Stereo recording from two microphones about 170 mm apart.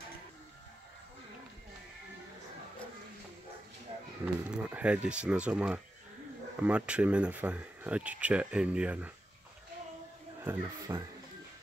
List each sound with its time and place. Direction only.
4.2 s speech: 5° right (ahead or behind)
10.4 s speech: 15° right (ahead or behind)